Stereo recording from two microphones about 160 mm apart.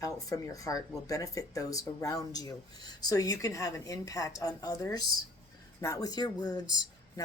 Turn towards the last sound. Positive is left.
turn(degrees=25)  # may be behind; listen again after turning